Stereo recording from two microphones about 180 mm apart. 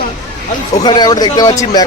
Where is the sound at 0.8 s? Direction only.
25° left (ahead or behind).